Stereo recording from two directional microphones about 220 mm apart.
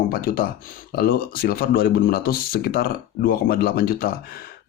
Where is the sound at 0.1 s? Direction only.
40° left (ahead or behind).